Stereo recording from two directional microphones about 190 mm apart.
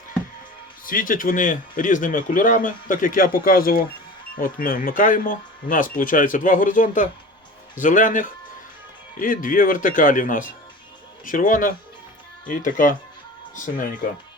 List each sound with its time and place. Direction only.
0.9 s a man's voice: 45° left (ahead or behind)